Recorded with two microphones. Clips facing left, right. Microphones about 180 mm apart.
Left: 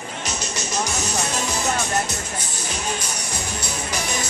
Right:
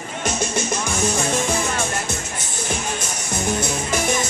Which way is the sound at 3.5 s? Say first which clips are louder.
Right 10 dB; 50° right (ahead or behind).